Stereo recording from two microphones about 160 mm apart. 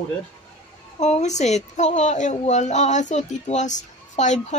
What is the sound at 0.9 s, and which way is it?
A woman's voice, 45° left (ahead or behind).